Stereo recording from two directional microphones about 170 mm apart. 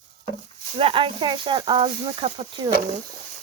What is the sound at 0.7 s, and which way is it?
Speech, 35° right (ahead or behind).